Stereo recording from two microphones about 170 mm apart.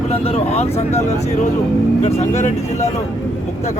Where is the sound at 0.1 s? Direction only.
40° left (ahead or behind).